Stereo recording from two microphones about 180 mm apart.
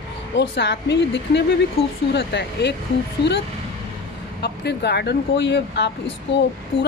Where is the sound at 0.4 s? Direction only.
75° left (ahead or behind).